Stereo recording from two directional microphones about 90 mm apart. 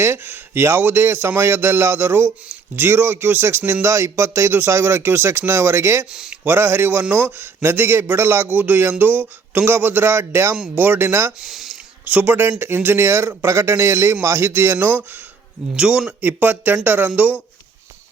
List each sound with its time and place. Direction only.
0.0 s a man's voice: 30° right (ahead or behind)
11.4 s a sound: centre (ahead or behind)
12.0 s a man's voice: 20° right (ahead or behind)
15.7 s a man's voice: 10° right (ahead or behind)